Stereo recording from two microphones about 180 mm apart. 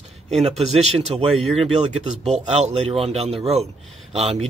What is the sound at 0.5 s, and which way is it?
Speech, 35° right (ahead or behind).